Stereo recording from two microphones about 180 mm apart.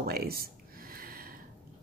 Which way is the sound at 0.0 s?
60° right (ahead or behind).